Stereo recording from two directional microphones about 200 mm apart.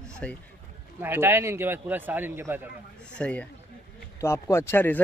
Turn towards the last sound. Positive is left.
turn(degrees=10)  # may be behind; listen again after turning